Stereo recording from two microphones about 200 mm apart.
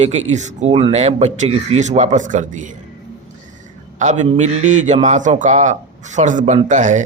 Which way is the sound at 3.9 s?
35° right (ahead or behind).